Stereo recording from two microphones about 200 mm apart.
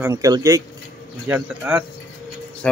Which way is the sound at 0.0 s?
15° right (ahead or behind).